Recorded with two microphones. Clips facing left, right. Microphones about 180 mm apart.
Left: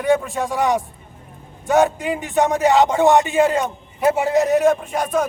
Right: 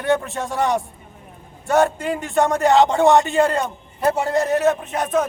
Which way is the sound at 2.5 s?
Centre (ahead or behind).